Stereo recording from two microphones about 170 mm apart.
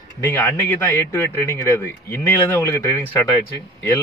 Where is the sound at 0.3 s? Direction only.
10° left (ahead or behind).